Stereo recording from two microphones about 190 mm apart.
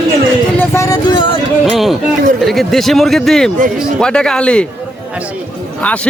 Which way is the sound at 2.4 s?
Centre (ahead or behind).